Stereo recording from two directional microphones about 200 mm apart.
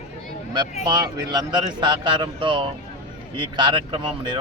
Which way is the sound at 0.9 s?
20° right (ahead or behind).